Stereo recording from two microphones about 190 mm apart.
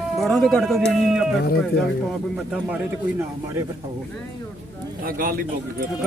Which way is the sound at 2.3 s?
5° right (ahead or behind).